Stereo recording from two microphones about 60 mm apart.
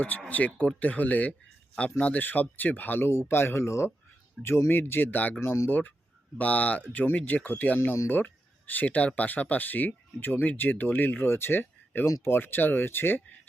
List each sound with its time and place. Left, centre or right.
0.3 s speech: left
3.1 s speech: left
6.4 s speech: left